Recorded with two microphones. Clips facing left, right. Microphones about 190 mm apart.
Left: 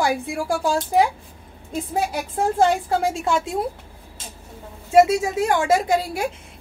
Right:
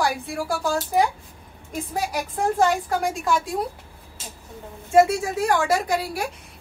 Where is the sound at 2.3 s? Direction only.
25° left (ahead or behind).